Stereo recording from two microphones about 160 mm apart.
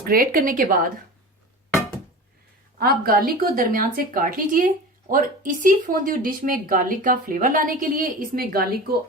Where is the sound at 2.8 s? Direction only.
70° right (ahead or behind).